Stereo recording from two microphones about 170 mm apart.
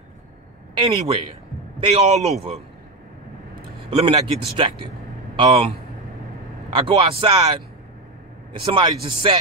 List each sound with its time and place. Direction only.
0.7 s speech: 30° right (ahead or behind)
3.9 s speech: 30° right (ahead or behind)
6.7 s speech: 30° right (ahead or behind)
8.7 s speech: 25° right (ahead or behind)